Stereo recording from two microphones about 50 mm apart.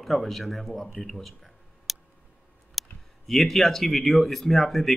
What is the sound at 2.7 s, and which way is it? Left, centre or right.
Speech, centre.